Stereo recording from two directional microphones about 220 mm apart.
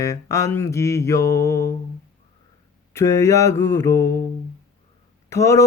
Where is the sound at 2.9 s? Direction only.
15° left (ahead or behind).